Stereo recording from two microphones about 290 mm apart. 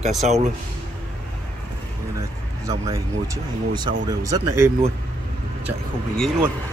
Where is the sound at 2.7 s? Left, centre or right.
Centre.